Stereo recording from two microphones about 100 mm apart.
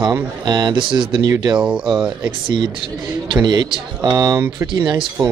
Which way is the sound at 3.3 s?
45° right (ahead or behind).